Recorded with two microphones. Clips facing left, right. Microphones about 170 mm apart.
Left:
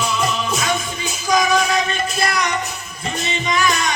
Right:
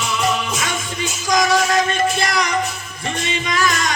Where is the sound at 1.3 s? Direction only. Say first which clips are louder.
Even; 90° right.